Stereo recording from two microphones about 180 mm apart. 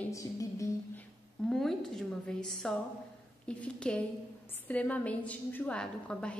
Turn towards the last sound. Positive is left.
turn(degrees=5)  # may be behind; listen again after turning